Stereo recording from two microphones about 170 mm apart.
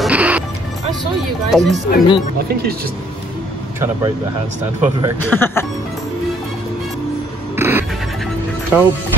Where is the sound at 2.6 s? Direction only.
65° right (ahead or behind).